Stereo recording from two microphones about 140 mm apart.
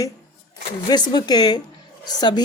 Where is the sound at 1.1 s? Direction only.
30° left (ahead or behind).